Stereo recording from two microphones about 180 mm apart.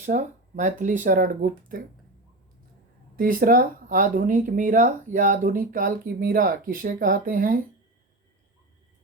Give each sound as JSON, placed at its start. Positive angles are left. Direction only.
{"t": 0.0, "sound": "speech", "side_deg": -45}
{"t": 3.2, "sound": "speech", "side_deg": -50}